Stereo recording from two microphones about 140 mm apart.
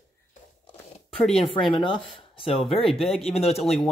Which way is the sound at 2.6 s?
Centre (ahead or behind).